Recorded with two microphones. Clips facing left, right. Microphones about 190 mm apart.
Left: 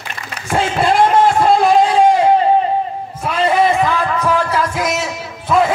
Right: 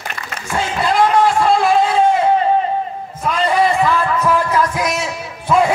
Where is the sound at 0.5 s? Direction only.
30° left (ahead or behind).